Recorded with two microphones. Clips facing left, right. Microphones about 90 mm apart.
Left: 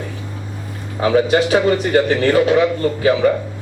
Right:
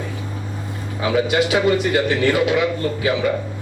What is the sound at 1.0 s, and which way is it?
A man's voice, 40° left (ahead or behind).